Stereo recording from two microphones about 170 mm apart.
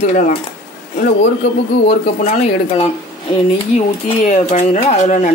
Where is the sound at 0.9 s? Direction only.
50° left (ahead or behind).